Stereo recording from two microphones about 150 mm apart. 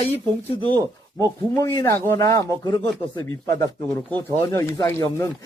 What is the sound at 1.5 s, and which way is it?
Speech, 20° left (ahead or behind).